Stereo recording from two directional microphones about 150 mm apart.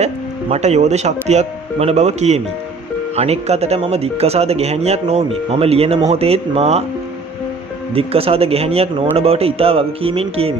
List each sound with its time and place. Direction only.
0.0 s speech: 45° right (ahead or behind)
7.9 s speech: 40° right (ahead or behind)